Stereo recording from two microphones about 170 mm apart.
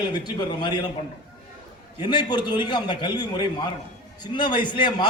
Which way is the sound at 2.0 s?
25° left (ahead or behind).